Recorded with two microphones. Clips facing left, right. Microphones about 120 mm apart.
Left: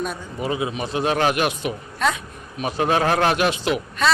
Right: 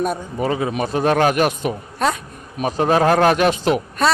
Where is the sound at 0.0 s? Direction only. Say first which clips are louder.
Right 6 dB; 50° right (ahead or behind).